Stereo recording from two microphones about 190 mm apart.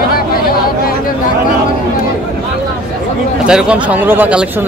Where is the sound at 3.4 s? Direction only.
5° right (ahead or behind).